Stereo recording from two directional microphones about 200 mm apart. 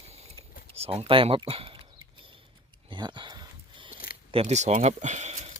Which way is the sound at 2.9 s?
25° right (ahead or behind).